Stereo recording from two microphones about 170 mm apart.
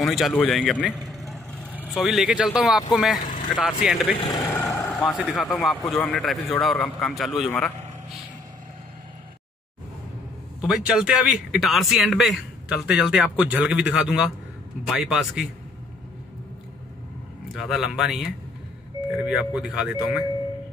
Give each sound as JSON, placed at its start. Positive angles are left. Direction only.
{"t": 0.0, "sound": "a man's voice", "side_deg": 0}
{"t": 4.2, "sound": "speech", "side_deg": 25}
{"t": 4.5, "sound": "a man's voice", "side_deg": 10}
{"t": 7.5, "sound": "vehicle", "side_deg": 0}
{"t": 10.7, "sound": "a man's voice", "side_deg": -5}
{"t": 17.6, "sound": "a man's voice", "side_deg": 0}